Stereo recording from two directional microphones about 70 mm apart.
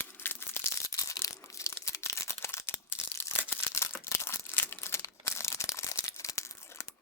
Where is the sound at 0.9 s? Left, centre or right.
Left.